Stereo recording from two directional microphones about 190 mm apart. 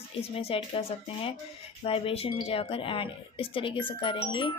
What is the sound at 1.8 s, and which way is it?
A woman's voice, 30° left (ahead or behind).